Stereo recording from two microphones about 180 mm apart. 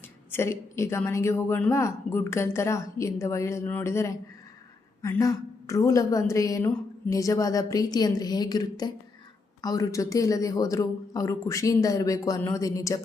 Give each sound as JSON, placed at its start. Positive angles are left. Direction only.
{"t": 0.3, "sound": "a woman's voice", "side_deg": 15}